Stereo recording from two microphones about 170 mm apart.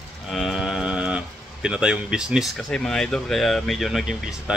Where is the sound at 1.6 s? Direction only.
5° right (ahead or behind).